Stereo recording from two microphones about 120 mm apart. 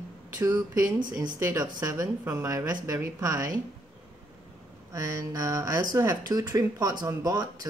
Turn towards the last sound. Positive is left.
turn(degrees=-30)  # may be behind; listen again after turning